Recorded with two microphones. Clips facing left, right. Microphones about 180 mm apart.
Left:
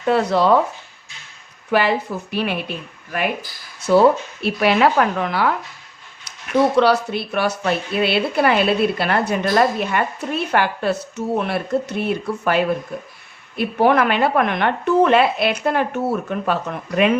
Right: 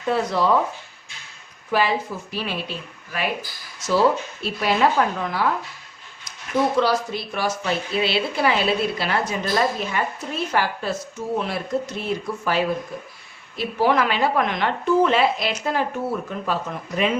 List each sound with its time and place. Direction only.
0.1 s a woman's voice: 70° left (ahead or behind)
1.7 s a woman's voice: 65° left (ahead or behind)